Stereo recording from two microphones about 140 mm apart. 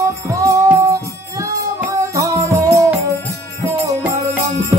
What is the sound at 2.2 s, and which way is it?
Music, 20° right (ahead or behind).